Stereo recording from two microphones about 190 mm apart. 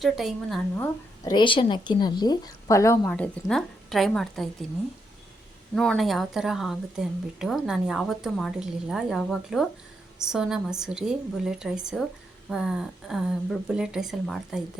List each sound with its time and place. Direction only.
0.0 s speech: centre (ahead or behind)
0.8 s speech: 20° left (ahead or behind)
3.1 s speech: 5° left (ahead or behind)
5.7 s speech: 5° left (ahead or behind)